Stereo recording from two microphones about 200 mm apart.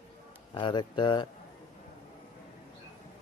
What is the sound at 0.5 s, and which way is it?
Speech, 25° left (ahead or behind).